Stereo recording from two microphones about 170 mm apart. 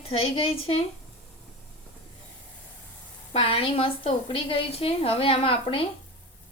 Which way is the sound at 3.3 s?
30° left (ahead or behind).